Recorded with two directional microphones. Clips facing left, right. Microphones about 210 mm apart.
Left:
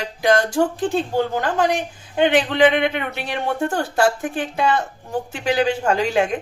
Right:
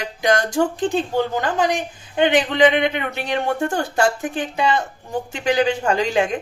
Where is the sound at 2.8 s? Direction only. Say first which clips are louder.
Even; 5° left (ahead or behind).